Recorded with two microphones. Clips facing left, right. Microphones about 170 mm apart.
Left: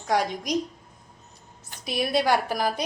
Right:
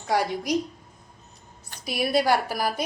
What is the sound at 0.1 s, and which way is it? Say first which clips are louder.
Speech: even; 5° right (ahead or behind).